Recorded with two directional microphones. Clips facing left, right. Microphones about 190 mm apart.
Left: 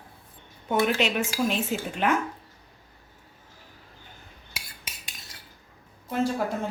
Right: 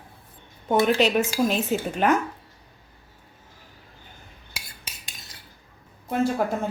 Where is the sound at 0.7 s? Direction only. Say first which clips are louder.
Right 4 dB; 35° right (ahead or behind).